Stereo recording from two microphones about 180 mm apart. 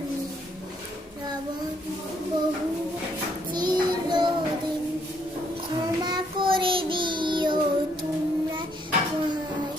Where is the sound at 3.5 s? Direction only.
25° right (ahead or behind).